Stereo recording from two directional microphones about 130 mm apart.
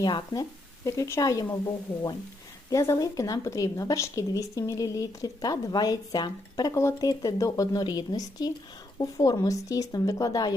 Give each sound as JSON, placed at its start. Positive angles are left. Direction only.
{"t": 0.0, "sound": "speech", "side_deg": 30}
{"t": 0.9, "sound": "a woman's voice", "side_deg": 20}
{"t": 2.6, "sound": "a woman's voice", "side_deg": 25}